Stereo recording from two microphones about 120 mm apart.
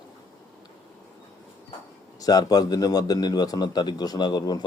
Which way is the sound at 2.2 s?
30° left (ahead or behind).